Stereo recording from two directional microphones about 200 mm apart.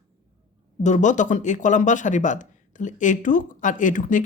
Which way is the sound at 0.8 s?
35° left (ahead or behind).